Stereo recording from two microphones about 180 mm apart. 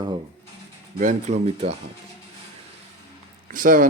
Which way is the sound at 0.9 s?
40° right (ahead or behind).